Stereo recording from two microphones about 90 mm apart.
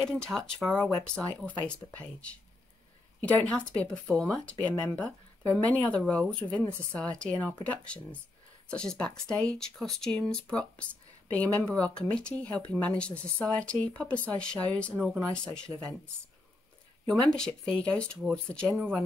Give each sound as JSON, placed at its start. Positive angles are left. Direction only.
{"t": 0.0, "sound": "speech", "side_deg": 5}
{"t": 3.2, "sound": "speech", "side_deg": 15}
{"t": 4.6, "sound": "speech", "side_deg": 15}
{"t": 17.1, "sound": "speech", "side_deg": 5}